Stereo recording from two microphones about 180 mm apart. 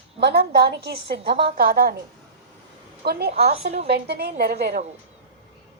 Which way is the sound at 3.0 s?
65° right (ahead or behind).